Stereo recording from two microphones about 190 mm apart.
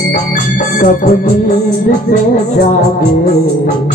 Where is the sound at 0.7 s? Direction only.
45° left (ahead or behind).